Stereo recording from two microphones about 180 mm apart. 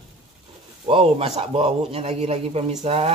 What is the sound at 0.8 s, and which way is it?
A man's voice, 30° right (ahead or behind).